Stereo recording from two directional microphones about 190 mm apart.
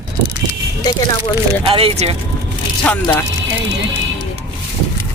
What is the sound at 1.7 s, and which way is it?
Speech, 30° right (ahead or behind).